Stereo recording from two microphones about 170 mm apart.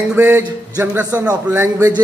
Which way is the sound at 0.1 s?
10° right (ahead or behind).